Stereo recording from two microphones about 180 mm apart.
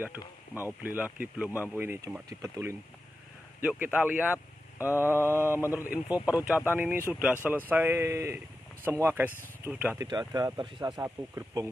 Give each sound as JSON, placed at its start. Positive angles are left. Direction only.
{"t": 0.6, "sound": "speech", "side_deg": -10}
{"t": 10.0, "sound": "speech", "side_deg": -20}